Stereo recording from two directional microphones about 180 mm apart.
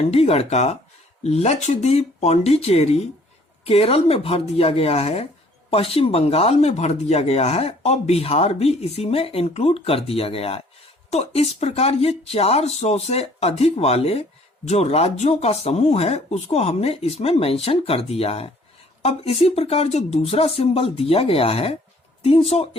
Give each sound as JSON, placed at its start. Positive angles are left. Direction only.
{"t": 0.1, "sound": "speech", "side_deg": 35}